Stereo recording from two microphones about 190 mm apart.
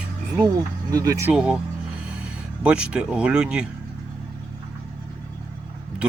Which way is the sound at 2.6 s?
5° right (ahead or behind).